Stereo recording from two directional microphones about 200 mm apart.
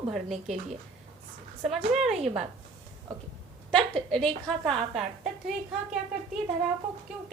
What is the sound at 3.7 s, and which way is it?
A woman's voice, 5° left (ahead or behind).